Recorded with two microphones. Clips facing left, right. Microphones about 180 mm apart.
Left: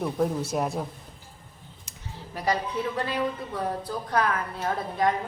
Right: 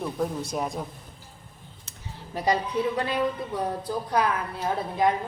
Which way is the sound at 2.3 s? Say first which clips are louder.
Right 2 dB; 20° right (ahead or behind).